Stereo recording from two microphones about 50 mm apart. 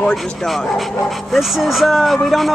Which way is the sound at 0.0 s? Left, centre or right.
Centre.